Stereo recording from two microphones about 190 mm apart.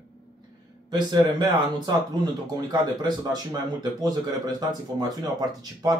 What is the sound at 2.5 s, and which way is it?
A man's voice, 20° right (ahead or behind).